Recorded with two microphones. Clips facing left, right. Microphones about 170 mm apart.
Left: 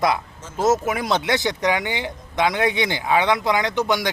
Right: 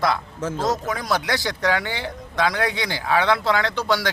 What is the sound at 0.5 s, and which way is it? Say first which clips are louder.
A man's voice: left 6 dB; 25° left (ahead or behind).